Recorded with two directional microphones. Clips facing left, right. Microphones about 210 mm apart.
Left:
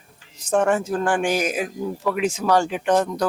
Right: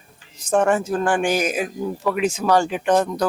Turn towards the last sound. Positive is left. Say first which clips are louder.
# right 1 dB
turn(degrees=-15)  # may be behind; listen again after turning